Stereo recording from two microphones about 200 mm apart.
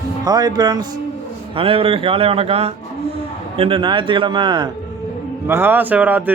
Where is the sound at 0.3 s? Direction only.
20° right (ahead or behind).